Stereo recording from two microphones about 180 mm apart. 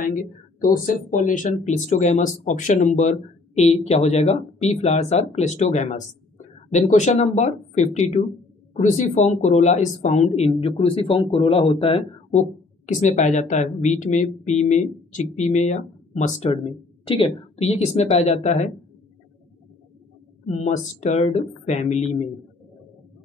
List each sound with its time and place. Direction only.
0.0 s speech: 45° left (ahead or behind)
20.4 s speech: 40° left (ahead or behind)